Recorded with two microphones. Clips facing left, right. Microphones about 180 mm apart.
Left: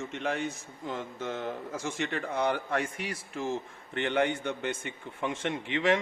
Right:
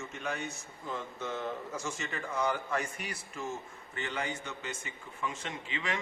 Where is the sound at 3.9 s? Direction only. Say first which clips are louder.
Left 9 dB; 70° left (ahead or behind).